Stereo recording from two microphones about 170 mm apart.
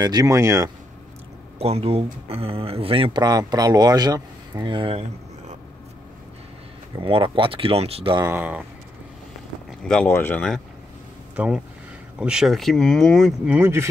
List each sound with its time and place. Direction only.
0.0 s speech: 20° right (ahead or behind)
1.6 s speech: 35° right (ahead or behind)
7.0 s speech: 30° right (ahead or behind)
8.2 s speech: 10° right (ahead or behind)
9.7 s a sound: 5° left (ahead or behind)
10.0 s speech: 10° left (ahead or behind)
11.3 s speech: 5° right (ahead or behind)